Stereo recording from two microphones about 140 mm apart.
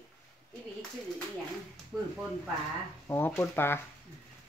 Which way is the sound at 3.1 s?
15° left (ahead or behind).